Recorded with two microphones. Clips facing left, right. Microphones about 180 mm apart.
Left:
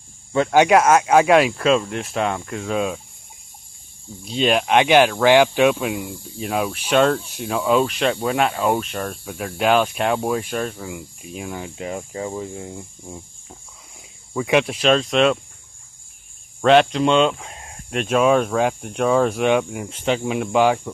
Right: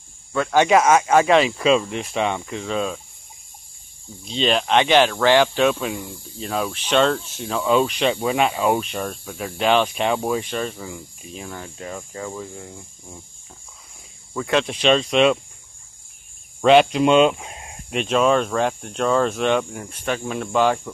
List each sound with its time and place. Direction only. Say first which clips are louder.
0.3 s speech: left 2 dB; 20° left (ahead or behind)
4.2 s speech: left 2 dB; 10° left (ahead or behind)
14.3 s speech: left 3 dB; 10° left (ahead or behind)
16.6 s speech: right 1 dB; 5° right (ahead or behind)
17.9 s speech: left 1 dB; 5° left (ahead or behind)
19.9 s speech: left 5 dB; 25° left (ahead or behind)
20.2 s speech: left 1 dB; 10° left (ahead or behind)